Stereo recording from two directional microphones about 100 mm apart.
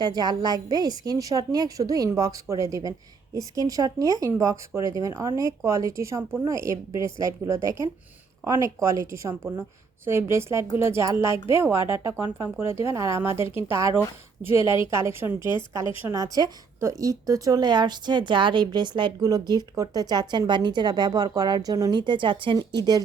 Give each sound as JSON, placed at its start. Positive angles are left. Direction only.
{"t": 0.0, "sound": "a woman's voice", "side_deg": -45}
{"t": 14.6, "sound": "a woman's voice", "side_deg": 55}
{"t": 14.8, "sound": "a woman's voice", "side_deg": -25}
{"t": 22.5, "sound": "a woman's voice", "side_deg": -45}